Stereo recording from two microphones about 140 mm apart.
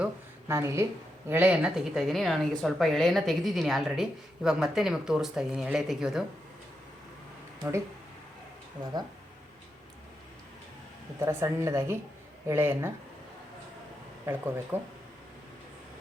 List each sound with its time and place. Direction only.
0.4 s a woman's voice: 20° right (ahead or behind); by 6.2 s 5° right (ahead or behind)
11.2 s a woman's voice: 20° right (ahead or behind)
14.3 s speech: 15° right (ahead or behind)